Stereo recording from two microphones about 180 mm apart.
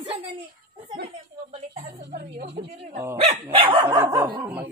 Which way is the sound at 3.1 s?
35° right (ahead or behind).